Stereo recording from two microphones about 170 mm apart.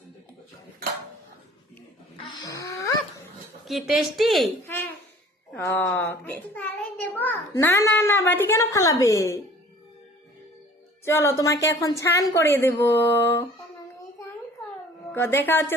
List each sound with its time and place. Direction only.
2.3 s a sound: 20° left (ahead or behind)
3.7 s speech: centre (ahead or behind)
4.6 s babbling: 10° left (ahead or behind)
5.5 s a child's voice: 15° left (ahead or behind)
11.0 s a child's voice: 15° left (ahead or behind)
15.1 s a child's voice: 15° left (ahead or behind)